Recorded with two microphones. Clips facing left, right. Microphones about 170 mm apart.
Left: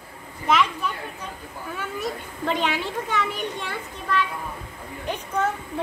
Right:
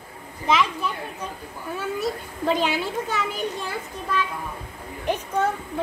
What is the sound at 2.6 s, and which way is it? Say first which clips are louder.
Speech: right 2 dB; 5° right (ahead or behind).